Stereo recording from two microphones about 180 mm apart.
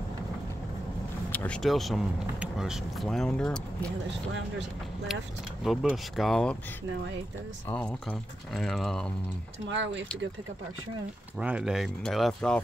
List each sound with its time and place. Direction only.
1.3 s speech: 5° left (ahead or behind)
5.6 s speech: centre (ahead or behind)
7.7 s speech: 5° left (ahead or behind)
9.7 s speech: 90° right
11.3 s speech: 5° right (ahead or behind)